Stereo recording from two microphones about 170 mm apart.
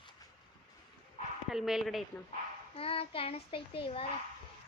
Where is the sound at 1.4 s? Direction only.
Centre (ahead or behind).